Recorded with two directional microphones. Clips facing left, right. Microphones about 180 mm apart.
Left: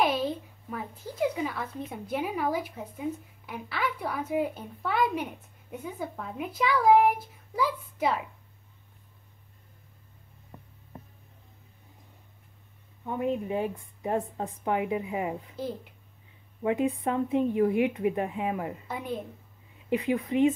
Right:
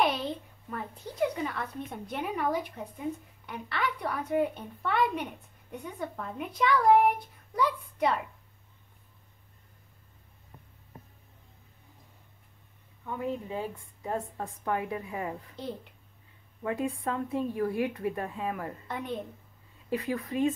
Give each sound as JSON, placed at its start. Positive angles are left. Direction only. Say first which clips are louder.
{"t": 0.0, "sound": "speech", "louder": "left 2 dB", "side_deg": 0}
{"t": 13.0, "sound": "a woman's voice", "louder": "left 4 dB", "side_deg": 20}
{"t": 15.5, "sound": "speech", "louder": "left 3 dB", "side_deg": 5}
{"t": 16.6, "sound": "a woman's voice", "louder": "left 5 dB", "side_deg": 20}
{"t": 18.9, "sound": "speech", "louder": "left 1 dB", "side_deg": 0}
{"t": 19.9, "sound": "a woman's voice", "louder": "left 4 dB", "side_deg": 20}